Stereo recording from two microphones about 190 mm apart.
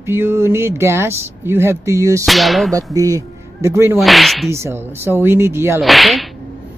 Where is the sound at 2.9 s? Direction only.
20° right (ahead or behind).